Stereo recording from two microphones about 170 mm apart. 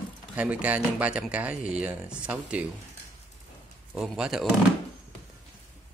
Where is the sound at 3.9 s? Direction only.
5° right (ahead or behind).